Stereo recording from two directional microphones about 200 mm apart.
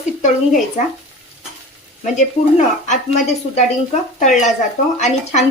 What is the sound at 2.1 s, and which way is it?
A woman's voice, 35° left (ahead or behind).